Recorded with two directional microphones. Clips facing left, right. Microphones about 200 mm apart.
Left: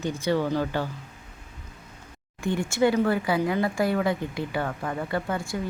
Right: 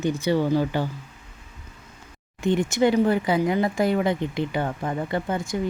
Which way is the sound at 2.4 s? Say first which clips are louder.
Right 3 dB; 20° right (ahead or behind).